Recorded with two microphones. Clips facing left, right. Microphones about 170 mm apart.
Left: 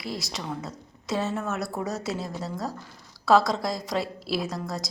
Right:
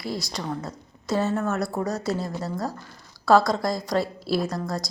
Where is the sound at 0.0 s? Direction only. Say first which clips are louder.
Right 3 dB; centre (ahead or behind).